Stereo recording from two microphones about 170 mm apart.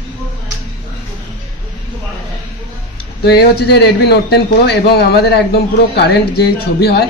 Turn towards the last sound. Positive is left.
turn(degrees=75)  # may be behind; listen again after turning